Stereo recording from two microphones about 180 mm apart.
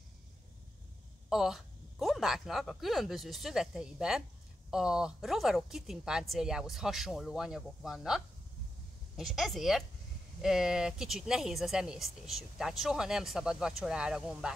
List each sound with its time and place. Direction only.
1.3 s speech: centre (ahead or behind)